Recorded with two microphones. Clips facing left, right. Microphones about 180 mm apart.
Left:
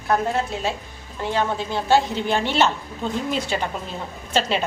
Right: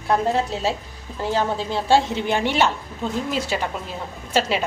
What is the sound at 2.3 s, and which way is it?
A woman's voice, 15° right (ahead or behind).